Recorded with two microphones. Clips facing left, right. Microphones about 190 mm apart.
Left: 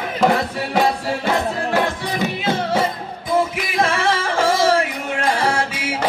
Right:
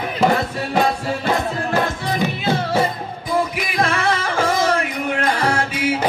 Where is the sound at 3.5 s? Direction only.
25° left (ahead or behind).